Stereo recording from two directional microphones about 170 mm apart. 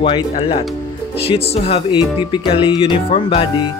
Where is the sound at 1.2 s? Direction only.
35° left (ahead or behind).